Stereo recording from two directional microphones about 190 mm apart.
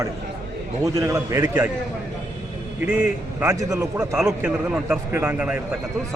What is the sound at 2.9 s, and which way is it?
Speech, 40° left (ahead or behind).